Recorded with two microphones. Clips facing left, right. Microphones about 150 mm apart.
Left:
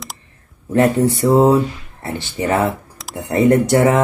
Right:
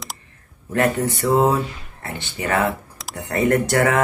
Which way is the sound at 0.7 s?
25° left (ahead or behind).